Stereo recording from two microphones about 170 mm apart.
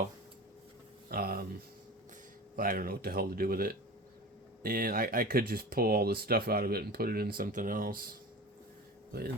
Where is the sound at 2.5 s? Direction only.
55° right (ahead or behind).